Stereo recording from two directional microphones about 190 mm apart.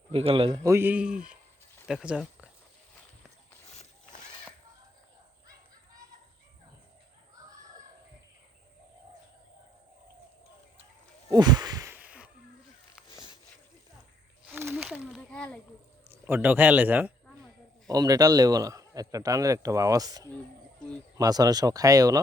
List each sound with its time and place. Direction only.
0.1 s a man's voice: 30° right (ahead or behind)
0.6 s speech: 15° right (ahead or behind)
11.3 s a sound: 20° right (ahead or behind)
14.4 s snake: 5° right (ahead or behind)
16.2 s speech: 10° right (ahead or behind)
17.8 s a man's voice: 20° right (ahead or behind)